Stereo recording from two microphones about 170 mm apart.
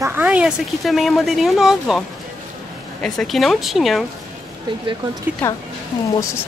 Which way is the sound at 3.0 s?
Centre (ahead or behind).